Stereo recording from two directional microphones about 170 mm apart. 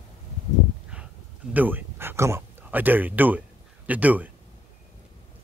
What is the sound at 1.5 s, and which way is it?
Speech, 10° right (ahead or behind).